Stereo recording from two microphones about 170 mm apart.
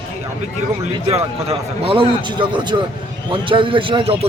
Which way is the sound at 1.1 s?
35° right (ahead or behind).